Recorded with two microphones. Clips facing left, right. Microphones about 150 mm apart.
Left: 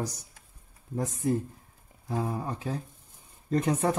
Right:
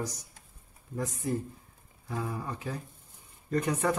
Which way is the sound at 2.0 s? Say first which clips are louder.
Left 4 dB; 30° left (ahead or behind).